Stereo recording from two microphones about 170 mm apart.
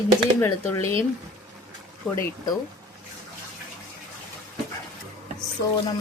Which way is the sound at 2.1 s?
15° left (ahead or behind).